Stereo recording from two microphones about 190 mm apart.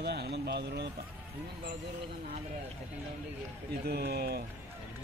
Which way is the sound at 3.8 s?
55° right (ahead or behind).